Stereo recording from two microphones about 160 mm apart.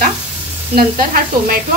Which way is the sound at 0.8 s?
65° right (ahead or behind).